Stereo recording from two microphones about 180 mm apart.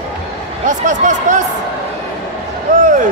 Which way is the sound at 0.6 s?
45° right (ahead or behind).